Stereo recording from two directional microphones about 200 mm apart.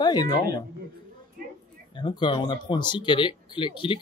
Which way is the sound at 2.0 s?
20° left (ahead or behind).